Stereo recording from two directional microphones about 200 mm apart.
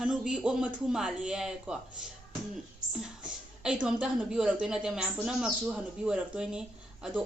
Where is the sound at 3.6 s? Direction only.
5° right (ahead or behind).